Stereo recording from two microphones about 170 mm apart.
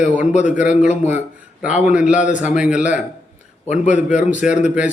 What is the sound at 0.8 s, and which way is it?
Speech, 45° left (ahead or behind).